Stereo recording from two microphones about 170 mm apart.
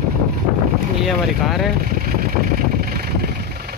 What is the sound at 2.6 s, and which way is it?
Vehicle, 60° right (ahead or behind).